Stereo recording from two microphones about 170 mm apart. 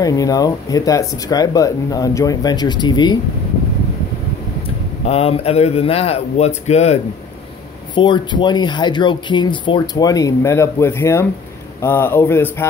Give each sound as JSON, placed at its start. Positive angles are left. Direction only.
{"t": 0.0, "sound": "speech", "side_deg": 20}
{"t": 5.0, "sound": "speech", "side_deg": 35}
{"t": 7.9, "sound": "speech", "side_deg": 25}